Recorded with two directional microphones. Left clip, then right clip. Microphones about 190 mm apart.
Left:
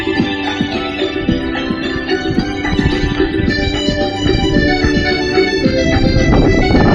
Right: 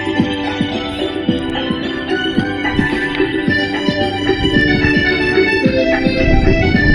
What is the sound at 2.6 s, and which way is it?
Music, 15° right (ahead or behind).